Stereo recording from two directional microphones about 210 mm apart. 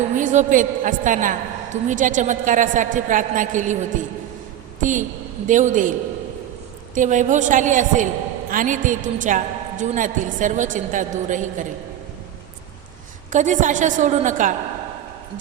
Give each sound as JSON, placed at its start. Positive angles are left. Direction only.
{"t": 0.2, "sound": "a woman's voice", "side_deg": -35}
{"t": 6.9, "sound": "a woman's voice", "side_deg": -35}
{"t": 13.3, "sound": "a woman's voice", "side_deg": -35}